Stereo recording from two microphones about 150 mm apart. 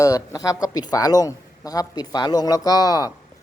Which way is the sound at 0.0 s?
20° left (ahead or behind).